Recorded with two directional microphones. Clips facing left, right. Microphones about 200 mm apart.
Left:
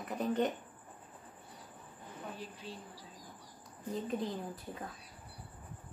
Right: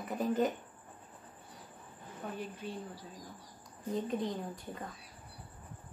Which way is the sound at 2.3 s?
55° right (ahead or behind).